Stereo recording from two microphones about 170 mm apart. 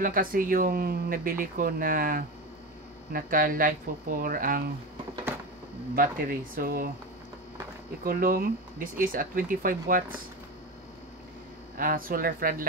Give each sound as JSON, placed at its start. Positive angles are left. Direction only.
{"t": 0.0, "sound": "speech", "side_deg": -55}
{"t": 5.9, "sound": "speech", "side_deg": -60}
{"t": 8.0, "sound": "speech", "side_deg": -60}
{"t": 11.7, "sound": "speech", "side_deg": -55}